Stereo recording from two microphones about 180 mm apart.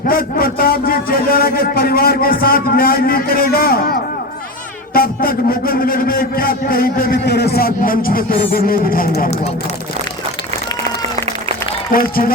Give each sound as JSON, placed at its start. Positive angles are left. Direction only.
{"t": 0.1, "sound": "a man's voice", "side_deg": 55}
{"t": 4.9, "sound": "a man's voice", "side_deg": 55}
{"t": 11.9, "sound": "a man's voice", "side_deg": 55}